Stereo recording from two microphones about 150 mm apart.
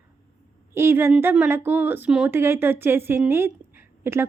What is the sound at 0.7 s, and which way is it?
A woman's voice, 15° right (ahead or behind).